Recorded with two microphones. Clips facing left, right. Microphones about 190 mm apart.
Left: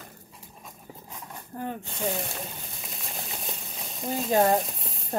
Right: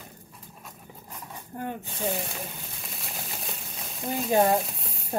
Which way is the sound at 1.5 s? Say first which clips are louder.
Even; 20° right (ahead or behind).